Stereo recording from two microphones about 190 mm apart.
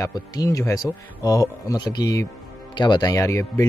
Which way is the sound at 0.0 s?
15° left (ahead or behind).